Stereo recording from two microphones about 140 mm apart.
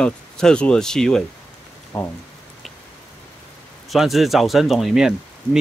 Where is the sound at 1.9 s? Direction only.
20° left (ahead or behind).